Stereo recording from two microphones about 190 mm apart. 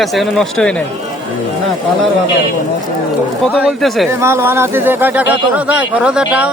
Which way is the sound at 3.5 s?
Centre (ahead or behind).